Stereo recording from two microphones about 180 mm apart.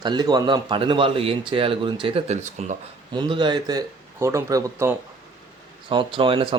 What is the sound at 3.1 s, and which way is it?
A man's voice, 25° right (ahead or behind).